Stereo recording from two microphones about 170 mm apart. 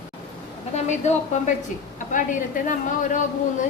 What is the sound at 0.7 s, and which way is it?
A woman's voice, 45° left (ahead or behind).